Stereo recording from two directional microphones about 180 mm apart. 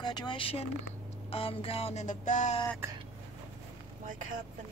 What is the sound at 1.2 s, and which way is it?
Music, 30° left (ahead or behind).